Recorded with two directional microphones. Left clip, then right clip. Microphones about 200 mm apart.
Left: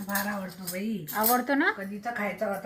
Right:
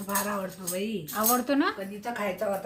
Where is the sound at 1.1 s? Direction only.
5° left (ahead or behind).